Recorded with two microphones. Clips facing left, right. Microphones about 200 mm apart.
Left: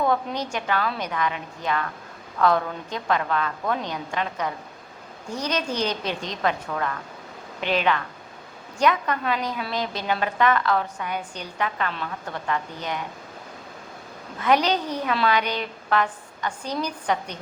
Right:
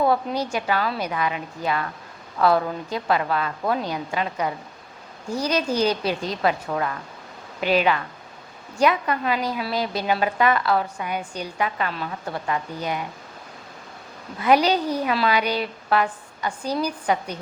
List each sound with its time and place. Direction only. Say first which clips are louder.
0.1 s a woman's voice: right 2 dB; 10° right (ahead or behind)
14.4 s a woman's voice: right 3 dB; 10° right (ahead or behind)